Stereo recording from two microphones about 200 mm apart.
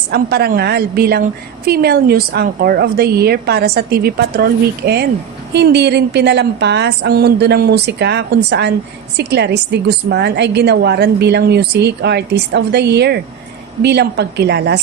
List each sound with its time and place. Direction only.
0.1 s a woman's voice: 50° right (ahead or behind)
4.8 s a woman's voice: 60° right (ahead or behind)